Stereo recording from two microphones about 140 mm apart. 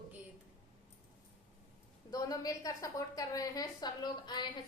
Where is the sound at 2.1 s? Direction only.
25° left (ahead or behind).